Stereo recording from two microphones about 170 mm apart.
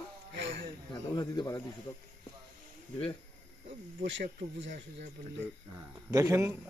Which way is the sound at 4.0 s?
90° right.